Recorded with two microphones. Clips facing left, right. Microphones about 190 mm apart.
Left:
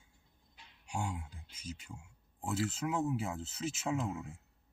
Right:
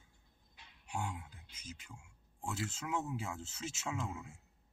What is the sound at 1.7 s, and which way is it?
Speech, 30° left (ahead or behind).